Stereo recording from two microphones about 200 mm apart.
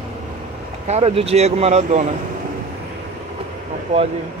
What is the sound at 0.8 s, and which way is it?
Speech, 30° right (ahead or behind).